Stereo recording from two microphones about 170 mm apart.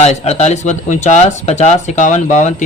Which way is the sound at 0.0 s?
40° left (ahead or behind).